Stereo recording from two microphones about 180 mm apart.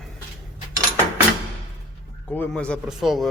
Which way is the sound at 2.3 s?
10° left (ahead or behind).